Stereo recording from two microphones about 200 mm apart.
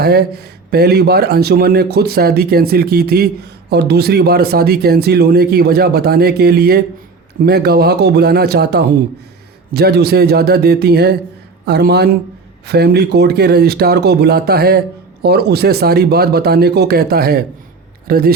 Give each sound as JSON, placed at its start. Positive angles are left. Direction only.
{"t": 0.0, "sound": "a man's voice", "side_deg": -50}